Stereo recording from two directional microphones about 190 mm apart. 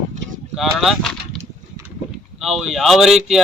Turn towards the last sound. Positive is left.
turn(degrees=0)  # may be behind; listen again after turning